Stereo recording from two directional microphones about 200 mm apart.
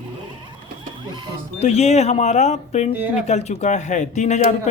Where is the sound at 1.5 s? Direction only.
30° left (ahead or behind).